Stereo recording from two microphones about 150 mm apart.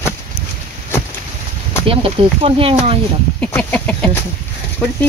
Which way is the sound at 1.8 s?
40° right (ahead or behind).